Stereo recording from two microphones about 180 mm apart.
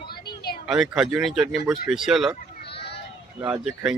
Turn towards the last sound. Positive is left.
turn(degrees=-5)  # may be behind; listen again after turning